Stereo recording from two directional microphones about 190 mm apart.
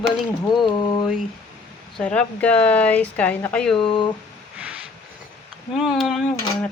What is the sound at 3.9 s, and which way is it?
Speech, 25° left (ahead or behind).